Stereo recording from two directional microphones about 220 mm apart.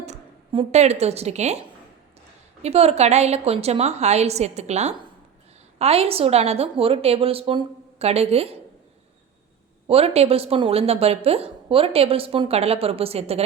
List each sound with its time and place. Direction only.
0.0 s speech: 25° right (ahead or behind)
2.6 s a woman's voice: 30° right (ahead or behind)
9.8 s a woman's voice: 25° right (ahead or behind)